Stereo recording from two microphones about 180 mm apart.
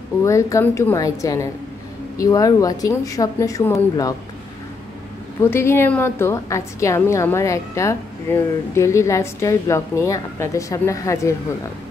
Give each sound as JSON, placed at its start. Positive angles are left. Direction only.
{"t": 0.2, "sound": "a woman's voice", "side_deg": 15}
{"t": 5.4, "sound": "a woman's voice", "side_deg": 15}